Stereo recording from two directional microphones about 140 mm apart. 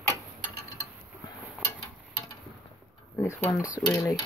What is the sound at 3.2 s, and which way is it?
Speech, 20° left (ahead or behind).